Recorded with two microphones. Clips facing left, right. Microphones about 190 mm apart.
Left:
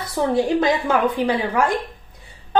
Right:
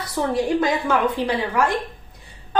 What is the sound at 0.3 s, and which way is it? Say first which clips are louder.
A woman's voice: left 2 dB; 20° left (ahead or behind).